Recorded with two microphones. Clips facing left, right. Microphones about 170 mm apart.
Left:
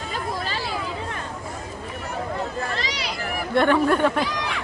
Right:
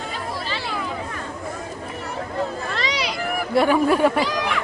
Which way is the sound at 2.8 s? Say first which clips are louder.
Right 5 dB; 70° right (ahead or behind).